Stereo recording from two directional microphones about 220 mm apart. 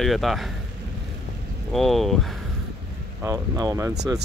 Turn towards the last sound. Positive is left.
turn(degrees=-15)  # may be behind; listen again after turning